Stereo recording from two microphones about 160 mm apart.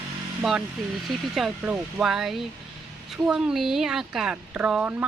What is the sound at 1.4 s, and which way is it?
Speech, 5° right (ahead or behind).